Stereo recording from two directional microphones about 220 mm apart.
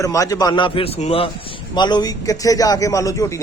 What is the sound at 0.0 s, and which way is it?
A man's voice, 15° left (ahead or behind).